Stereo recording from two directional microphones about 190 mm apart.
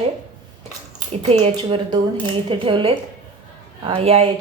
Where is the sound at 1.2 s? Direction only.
30° right (ahead or behind).